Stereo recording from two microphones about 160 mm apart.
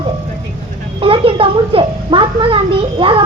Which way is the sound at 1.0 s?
35° right (ahead or behind).